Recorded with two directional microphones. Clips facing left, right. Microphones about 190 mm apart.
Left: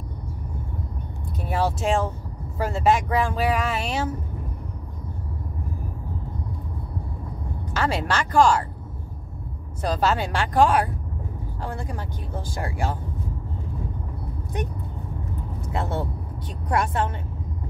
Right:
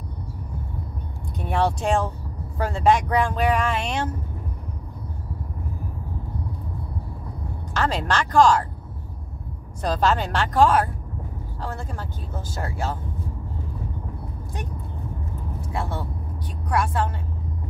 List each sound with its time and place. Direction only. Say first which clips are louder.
1.4 s speech: right 1 dB; 5° left (ahead or behind)
7.7 s speech: right 1 dB; 10° left (ahead or behind)
9.8 s speech: right 1 dB; 10° left (ahead or behind)
15.7 s a woman's voice: left 3 dB; 20° left (ahead or behind)